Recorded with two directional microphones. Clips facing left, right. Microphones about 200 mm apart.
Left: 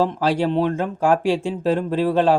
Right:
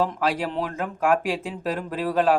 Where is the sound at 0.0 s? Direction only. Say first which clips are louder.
Left 5 dB; 30° left (ahead or behind).